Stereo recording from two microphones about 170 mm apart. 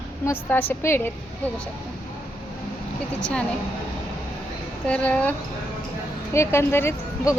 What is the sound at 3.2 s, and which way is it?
Speech, 5° left (ahead or behind).